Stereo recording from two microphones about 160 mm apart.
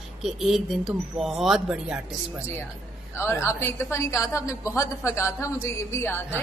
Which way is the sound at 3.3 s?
15° left (ahead or behind).